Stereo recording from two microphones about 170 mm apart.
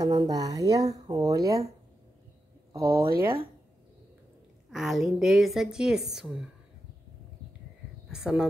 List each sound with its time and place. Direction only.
0.0 s speech: 20° right (ahead or behind)
2.7 s speech: 15° right (ahead or behind)
4.6 s a woman's voice: centre (ahead or behind)
8.1 s speech: 5° right (ahead or behind)